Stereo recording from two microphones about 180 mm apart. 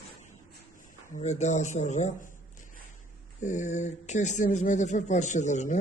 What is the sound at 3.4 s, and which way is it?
Speech, 40° left (ahead or behind).